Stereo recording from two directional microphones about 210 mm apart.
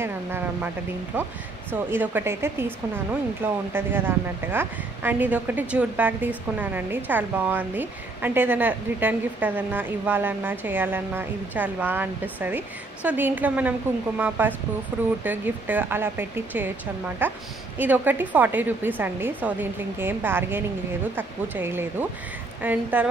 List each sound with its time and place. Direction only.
0.0 s a woman's voice: 10° right (ahead or behind)